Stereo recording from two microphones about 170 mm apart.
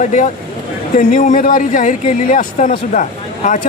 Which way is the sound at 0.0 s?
45° left (ahead or behind).